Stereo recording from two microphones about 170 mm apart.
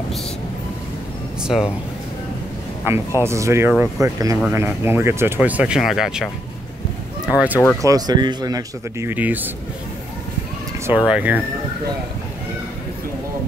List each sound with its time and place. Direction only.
1.4 s speech: 5° right (ahead or behind)
2.9 s speech: 15° right (ahead or behind)
7.8 s speech: 20° right (ahead or behind)
9.1 s speech: 10° right (ahead or behind)
10.9 s speech: 5° right (ahead or behind)